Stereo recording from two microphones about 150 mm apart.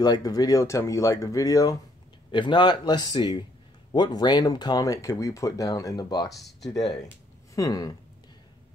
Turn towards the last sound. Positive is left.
turn(degrees=25)  # may be behind; listen again after turning